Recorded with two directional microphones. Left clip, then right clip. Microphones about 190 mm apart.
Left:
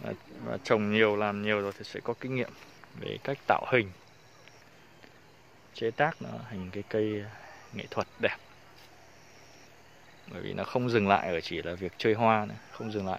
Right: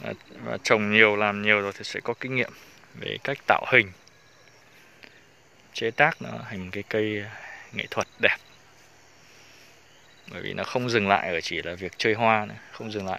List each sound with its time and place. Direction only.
0.0 s speech: 15° right (ahead or behind)
5.7 s speech: 15° right (ahead or behind)
10.2 s speech: 10° right (ahead or behind)